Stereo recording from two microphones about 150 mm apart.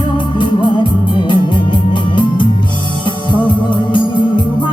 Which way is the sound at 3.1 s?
35° left (ahead or behind).